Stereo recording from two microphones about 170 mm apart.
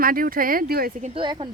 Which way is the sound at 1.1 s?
30° right (ahead or behind).